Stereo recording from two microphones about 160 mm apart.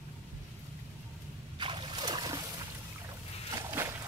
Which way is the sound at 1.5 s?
30° right (ahead or behind).